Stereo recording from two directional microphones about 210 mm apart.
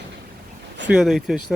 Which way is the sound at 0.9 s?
Centre (ahead or behind).